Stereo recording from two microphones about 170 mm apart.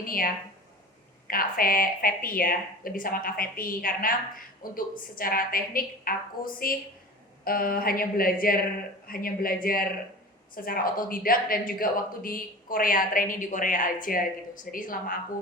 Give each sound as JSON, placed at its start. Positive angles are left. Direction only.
{"t": 0.0, "sound": "speech", "side_deg": 55}
{"t": 1.3, "sound": "speech", "side_deg": 55}